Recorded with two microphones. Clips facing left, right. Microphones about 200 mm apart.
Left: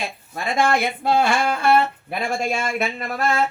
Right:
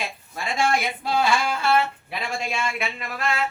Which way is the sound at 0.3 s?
55° left (ahead or behind).